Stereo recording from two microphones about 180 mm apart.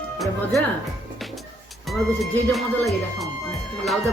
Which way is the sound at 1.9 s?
Centre (ahead or behind).